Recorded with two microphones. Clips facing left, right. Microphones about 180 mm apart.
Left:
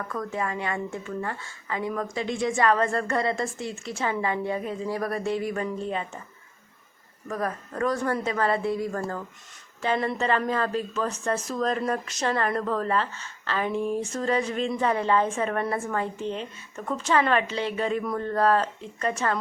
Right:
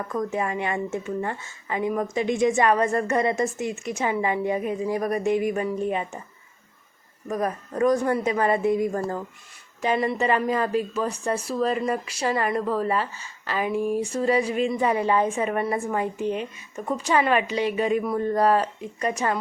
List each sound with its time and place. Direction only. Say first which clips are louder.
0.0 s speech: right 4 dB; 20° right (ahead or behind)
7.3 s a woman's voice: right 3 dB; 20° right (ahead or behind)